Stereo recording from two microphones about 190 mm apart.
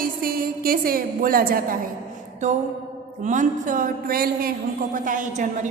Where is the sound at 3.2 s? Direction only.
40° right (ahead or behind).